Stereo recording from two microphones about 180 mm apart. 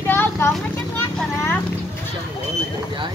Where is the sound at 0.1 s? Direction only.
10° left (ahead or behind).